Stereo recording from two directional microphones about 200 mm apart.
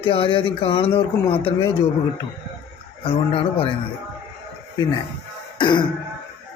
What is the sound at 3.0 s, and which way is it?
Speech, 25° left (ahead or behind).